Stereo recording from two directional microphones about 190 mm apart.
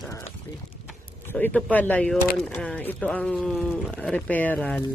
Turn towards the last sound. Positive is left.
turn(degrees=10)  # may be behind; listen again after turning